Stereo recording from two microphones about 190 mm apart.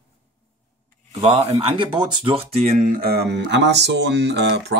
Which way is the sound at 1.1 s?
35° right (ahead or behind).